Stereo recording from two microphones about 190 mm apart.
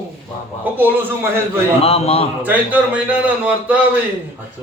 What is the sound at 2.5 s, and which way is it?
A man's voice, 10° right (ahead or behind).